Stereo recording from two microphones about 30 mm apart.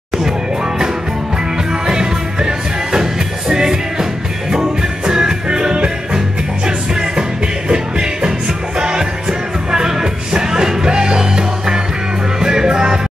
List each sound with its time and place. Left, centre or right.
1.7 s music: right